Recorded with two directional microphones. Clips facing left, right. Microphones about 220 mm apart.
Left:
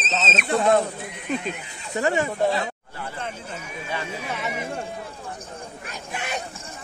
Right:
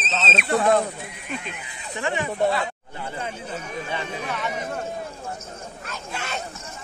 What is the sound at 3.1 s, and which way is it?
Speech, 10° right (ahead or behind).